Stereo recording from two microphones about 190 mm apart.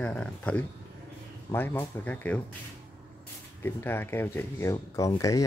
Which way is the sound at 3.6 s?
10° left (ahead or behind).